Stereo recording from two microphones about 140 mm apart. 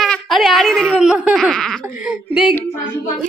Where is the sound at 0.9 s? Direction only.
10° right (ahead or behind).